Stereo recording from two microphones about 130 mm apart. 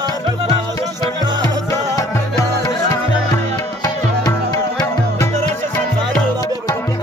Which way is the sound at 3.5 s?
30° left (ahead or behind).